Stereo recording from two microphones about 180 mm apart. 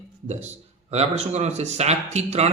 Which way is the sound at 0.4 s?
35° right (ahead or behind).